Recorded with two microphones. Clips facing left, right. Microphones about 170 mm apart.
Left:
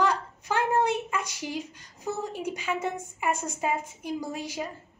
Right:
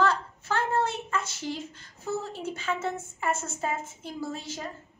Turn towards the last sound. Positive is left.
turn(degrees=10)  # may be behind; listen again after turning